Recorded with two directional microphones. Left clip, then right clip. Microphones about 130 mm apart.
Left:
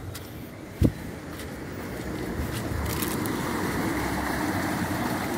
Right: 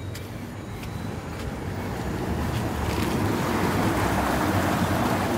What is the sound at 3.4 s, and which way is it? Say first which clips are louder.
Vehicle: right 4 dB; 30° left (ahead or behind).